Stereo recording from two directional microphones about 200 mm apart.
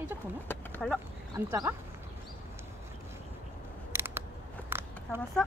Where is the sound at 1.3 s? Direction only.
15° right (ahead or behind).